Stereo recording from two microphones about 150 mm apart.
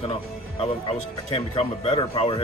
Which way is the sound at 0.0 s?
40° left (ahead or behind).